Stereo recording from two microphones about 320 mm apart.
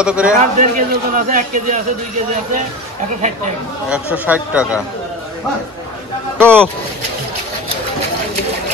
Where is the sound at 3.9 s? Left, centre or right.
Centre.